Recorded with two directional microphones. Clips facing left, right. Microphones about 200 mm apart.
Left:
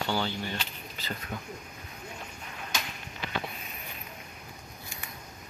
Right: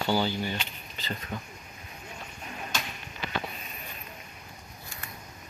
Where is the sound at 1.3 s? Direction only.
10° left (ahead or behind).